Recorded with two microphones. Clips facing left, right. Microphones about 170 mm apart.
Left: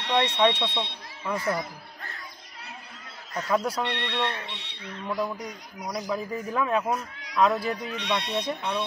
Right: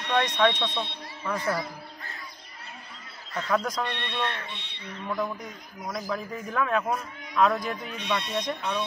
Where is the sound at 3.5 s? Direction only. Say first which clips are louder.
Left 1 dB; 10° left (ahead or behind).